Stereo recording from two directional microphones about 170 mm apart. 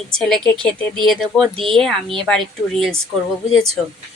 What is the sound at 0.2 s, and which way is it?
Speech, centre (ahead or behind).